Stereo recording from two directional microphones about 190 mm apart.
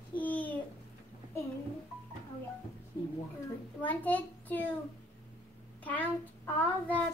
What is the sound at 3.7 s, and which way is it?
Child singing, 10° left (ahead or behind).